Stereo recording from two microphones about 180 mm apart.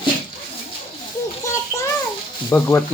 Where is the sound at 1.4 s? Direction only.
15° left (ahead or behind).